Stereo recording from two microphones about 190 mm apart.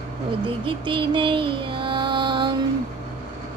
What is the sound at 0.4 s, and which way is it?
Music, 25° right (ahead or behind).